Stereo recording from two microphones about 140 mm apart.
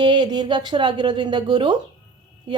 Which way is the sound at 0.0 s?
30° right (ahead or behind).